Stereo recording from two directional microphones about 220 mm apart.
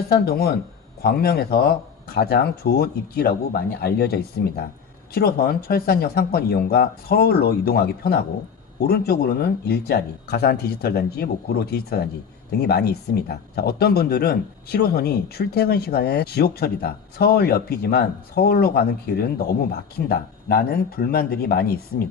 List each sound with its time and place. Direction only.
0.1 s speech: 45° left (ahead or behind)